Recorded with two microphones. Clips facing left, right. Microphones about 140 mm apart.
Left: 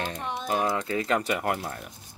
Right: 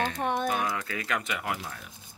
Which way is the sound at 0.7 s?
25° left (ahead or behind).